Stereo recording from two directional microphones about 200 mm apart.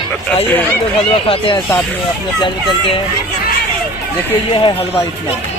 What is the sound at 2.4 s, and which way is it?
Speech, 25° left (ahead or behind).